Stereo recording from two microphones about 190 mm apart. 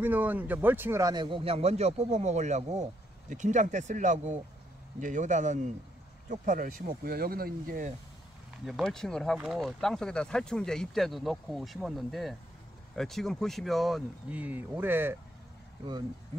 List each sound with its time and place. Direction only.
0.0 s a man's voice: 10° right (ahead or behind); by 7.9 s 45° right (ahead or behind)
8.6 s speech: centre (ahead or behind)